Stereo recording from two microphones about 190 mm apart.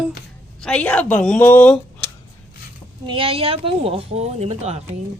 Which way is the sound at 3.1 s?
30° right (ahead or behind).